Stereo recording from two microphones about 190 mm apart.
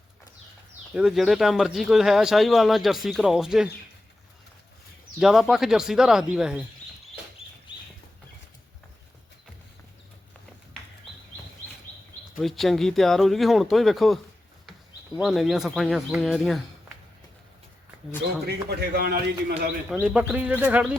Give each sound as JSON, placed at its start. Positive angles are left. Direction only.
{"t": 0.9, "sound": "speech", "side_deg": 0}
{"t": 5.2, "sound": "speech", "side_deg": 0}
{"t": 12.4, "sound": "speech", "side_deg": 0}
{"t": 18.4, "sound": "a man's voice", "side_deg": -60}
{"t": 19.9, "sound": "speech", "side_deg": -5}